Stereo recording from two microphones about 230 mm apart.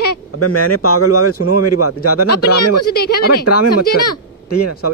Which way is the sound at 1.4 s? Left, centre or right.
Left.